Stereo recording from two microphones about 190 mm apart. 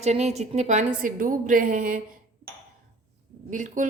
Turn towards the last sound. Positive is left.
turn(degrees=-40)  # may be behind; listen again after turning